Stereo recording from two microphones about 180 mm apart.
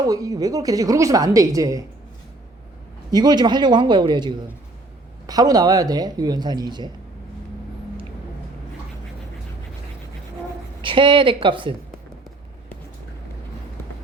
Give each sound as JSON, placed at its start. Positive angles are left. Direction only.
{"t": 0.0, "sound": "a woman's voice", "side_deg": -20}
{"t": 3.1, "sound": "a woman's voice", "side_deg": -25}
{"t": 10.8, "sound": "a woman's voice", "side_deg": -25}